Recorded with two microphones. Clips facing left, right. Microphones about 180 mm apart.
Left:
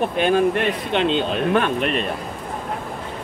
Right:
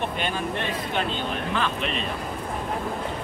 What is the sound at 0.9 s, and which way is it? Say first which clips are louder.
Speech: left 9 dB; 75° left (ahead or behind).